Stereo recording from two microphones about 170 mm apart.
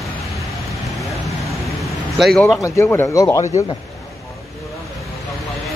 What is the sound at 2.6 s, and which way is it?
Speech, 15° left (ahead or behind).